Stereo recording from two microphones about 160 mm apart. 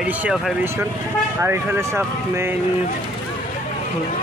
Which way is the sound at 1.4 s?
15° right (ahead or behind).